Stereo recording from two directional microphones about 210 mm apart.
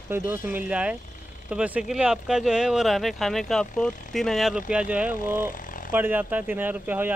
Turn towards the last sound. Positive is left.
turn(degrees=-10)  # may be behind; listen again after turning